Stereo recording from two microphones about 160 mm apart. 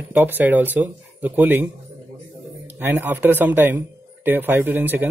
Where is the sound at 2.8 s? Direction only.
10° right (ahead or behind).